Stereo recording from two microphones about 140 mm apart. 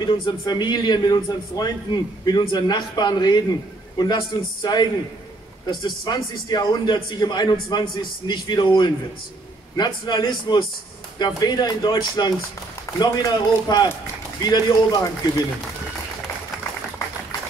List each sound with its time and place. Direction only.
0.0 s a man's voice: 30° left (ahead or behind)